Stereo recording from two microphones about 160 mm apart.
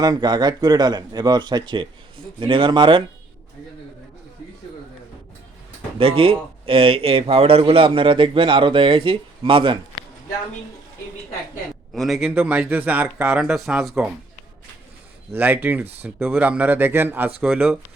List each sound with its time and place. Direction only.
0.0 s speech: 25° right (ahead or behind)
6.0 s speech: 35° right (ahead or behind)
11.9 s speech: centre (ahead or behind)
15.3 s speech: 10° right (ahead or behind)